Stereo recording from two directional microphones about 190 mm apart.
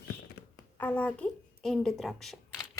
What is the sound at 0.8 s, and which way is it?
Speech, 10° left (ahead or behind).